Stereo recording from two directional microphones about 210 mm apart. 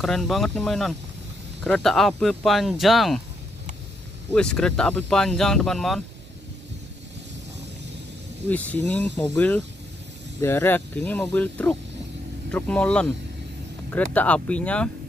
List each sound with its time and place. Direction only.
0.0 s speech: centre (ahead or behind)
4.3 s speech: 5° left (ahead or behind)
8.5 s speech: 5° left (ahead or behind)